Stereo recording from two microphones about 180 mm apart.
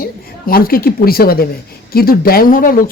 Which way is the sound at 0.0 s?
55° left (ahead or behind).